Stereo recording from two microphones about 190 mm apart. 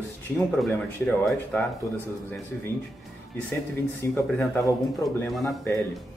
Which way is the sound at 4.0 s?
10° left (ahead or behind).